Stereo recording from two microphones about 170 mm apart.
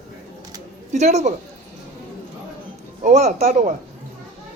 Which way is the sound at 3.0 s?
45° right (ahead or behind).